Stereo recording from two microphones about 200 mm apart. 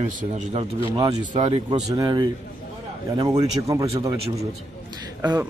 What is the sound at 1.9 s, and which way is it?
A man's voice, 20° right (ahead or behind).